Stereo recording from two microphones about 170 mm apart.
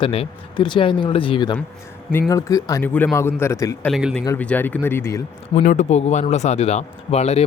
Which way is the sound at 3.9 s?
Centre (ahead or behind).